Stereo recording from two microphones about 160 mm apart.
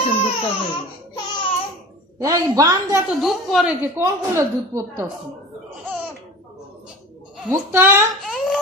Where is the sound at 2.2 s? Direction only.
20° right (ahead or behind).